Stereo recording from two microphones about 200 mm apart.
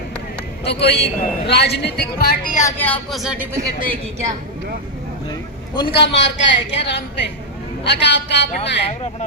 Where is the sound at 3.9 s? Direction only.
35° right (ahead or behind).